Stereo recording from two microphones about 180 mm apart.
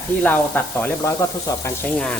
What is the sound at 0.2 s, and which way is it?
Speech, 10° left (ahead or behind).